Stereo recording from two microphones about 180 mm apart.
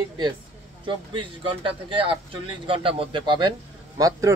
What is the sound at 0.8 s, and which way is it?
Speech, 30° right (ahead or behind).